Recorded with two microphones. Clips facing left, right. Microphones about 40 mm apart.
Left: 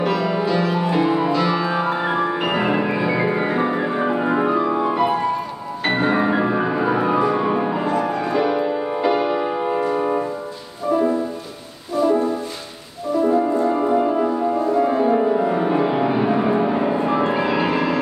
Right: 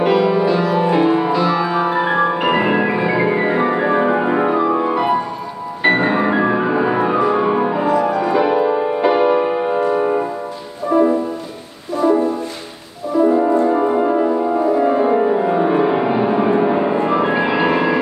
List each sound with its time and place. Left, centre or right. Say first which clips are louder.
0.0 s music: right 6 dB; right
2.0 s music: right 4 dB; right
6.1 s music: right 3 dB; centre
8.7 s music: right 4 dB; right
13.2 s music: right 4 dB; centre